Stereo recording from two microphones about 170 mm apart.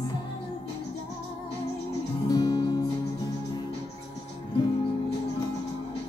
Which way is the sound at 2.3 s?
20° left (ahead or behind).